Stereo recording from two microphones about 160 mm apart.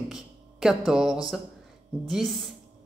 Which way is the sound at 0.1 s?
5° right (ahead or behind).